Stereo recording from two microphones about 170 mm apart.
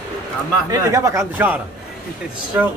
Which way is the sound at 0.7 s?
15° right (ahead or behind).